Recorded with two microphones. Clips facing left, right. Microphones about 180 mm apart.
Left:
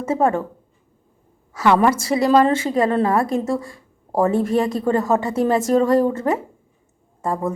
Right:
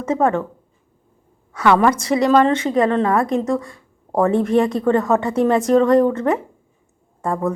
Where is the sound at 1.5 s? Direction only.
25° left (ahead or behind).